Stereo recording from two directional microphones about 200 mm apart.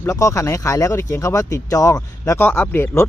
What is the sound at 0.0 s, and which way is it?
Speech, 15° left (ahead or behind).